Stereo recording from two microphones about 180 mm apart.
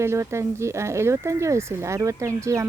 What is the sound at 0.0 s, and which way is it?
Speech, 15° right (ahead or behind).